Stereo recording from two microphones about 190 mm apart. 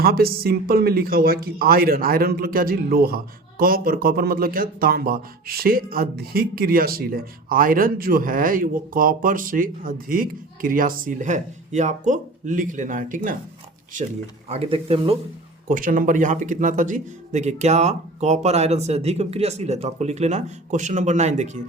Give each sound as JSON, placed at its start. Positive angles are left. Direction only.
{"t": 0.0, "sound": "speech", "side_deg": -55}
{"t": 14.5, "sound": "a man's voice", "side_deg": -30}
{"t": 15.7, "sound": "a man's voice", "side_deg": -45}